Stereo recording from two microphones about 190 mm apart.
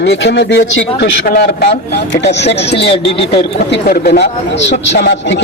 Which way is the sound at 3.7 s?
60° left (ahead or behind).